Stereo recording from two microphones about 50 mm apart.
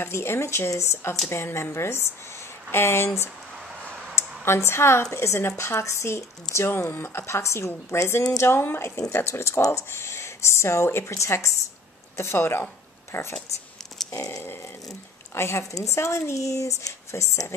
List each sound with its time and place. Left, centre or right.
0.0 s speech: left
1.3 s speech: left
4.1 s a sound: left
5.1 s speech: left
5.6 s speech: left
9.1 s speech: left
12.2 s speech: left
14.4 s a sound: left
15.3 s speech: left